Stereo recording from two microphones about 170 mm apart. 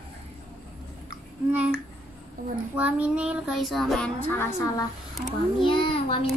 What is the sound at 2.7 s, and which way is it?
A child's voice, 5° right (ahead or behind).